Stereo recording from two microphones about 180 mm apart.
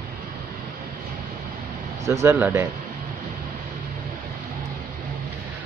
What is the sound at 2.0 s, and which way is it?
Speech, 15° right (ahead or behind).